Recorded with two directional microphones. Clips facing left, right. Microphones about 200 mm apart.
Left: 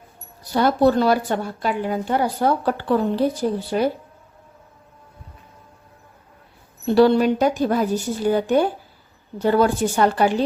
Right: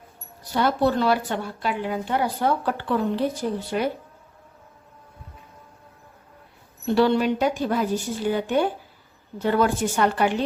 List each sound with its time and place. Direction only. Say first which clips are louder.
0.5 s speech: left 5 dB; 40° left (ahead or behind)
6.8 s speech: left 5 dB; 35° left (ahead or behind)